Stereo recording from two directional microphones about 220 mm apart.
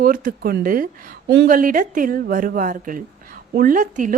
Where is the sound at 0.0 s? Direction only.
40° right (ahead or behind).